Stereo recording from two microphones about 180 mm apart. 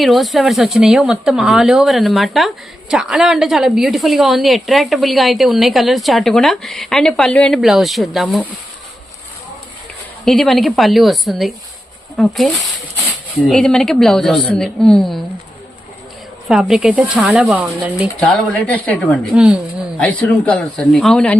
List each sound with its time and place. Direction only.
0.0 s a woman's voice: centre (ahead or behind)
10.2 s a woman's voice: centre (ahead or behind)
16.5 s a woman's voice: 5° right (ahead or behind)
18.3 s a woman's voice: 10° left (ahead or behind)